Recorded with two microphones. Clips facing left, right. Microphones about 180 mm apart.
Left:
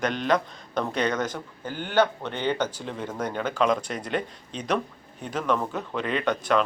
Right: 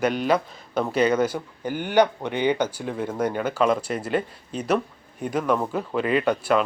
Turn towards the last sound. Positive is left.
turn(degrees=-5)  # may be behind; listen again after turning